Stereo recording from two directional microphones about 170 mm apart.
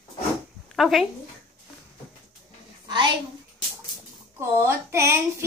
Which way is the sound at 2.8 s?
30° right (ahead or behind).